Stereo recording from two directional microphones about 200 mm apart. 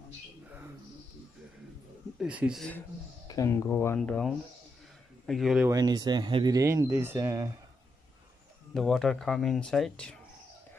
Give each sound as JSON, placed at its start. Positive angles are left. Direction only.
{"t": 2.1, "sound": "speech", "side_deg": -5}
{"t": 3.3, "sound": "speech", "side_deg": 15}
{"t": 5.7, "sound": "speech", "side_deg": -20}
{"t": 8.7, "sound": "speech", "side_deg": 0}